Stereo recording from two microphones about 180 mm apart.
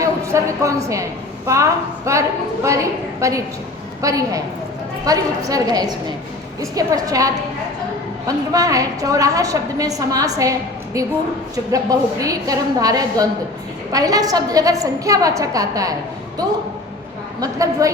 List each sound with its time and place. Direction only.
0.0 s a sound: 15° right (ahead or behind)
1.5 s a woman's voice: 15° right (ahead or behind)
8.5 s a woman's voice: 20° right (ahead or behind)
11.5 s a woman's voice: 20° right (ahead or behind)
17.4 s a woman's voice: 20° right (ahead or behind)